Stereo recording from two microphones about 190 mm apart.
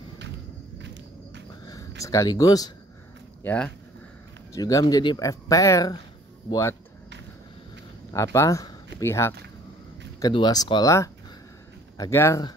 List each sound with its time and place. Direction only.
0.7 s walk: 65° right (ahead or behind)
1.7 s speech: 20° left (ahead or behind)
3.4 s speech: 5° left (ahead or behind)
4.5 s speech: 20° left (ahead or behind)
8.1 s speech: 15° left (ahead or behind)